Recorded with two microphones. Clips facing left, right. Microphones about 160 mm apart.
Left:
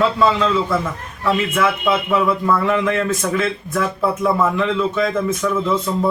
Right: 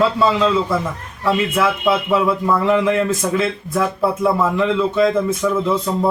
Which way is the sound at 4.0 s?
5° right (ahead or behind).